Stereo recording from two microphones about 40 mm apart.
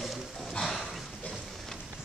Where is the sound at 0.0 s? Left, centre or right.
Centre.